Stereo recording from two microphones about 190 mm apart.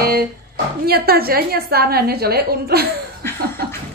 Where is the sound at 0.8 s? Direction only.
55° right (ahead or behind).